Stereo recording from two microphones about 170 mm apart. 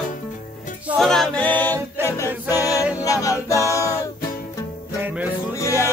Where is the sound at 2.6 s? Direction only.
20° left (ahead or behind).